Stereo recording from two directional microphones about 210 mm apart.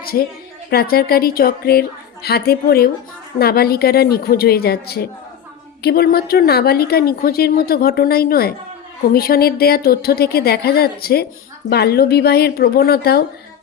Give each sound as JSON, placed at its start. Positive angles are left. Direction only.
{"t": 0.7, "sound": "speech", "side_deg": 45}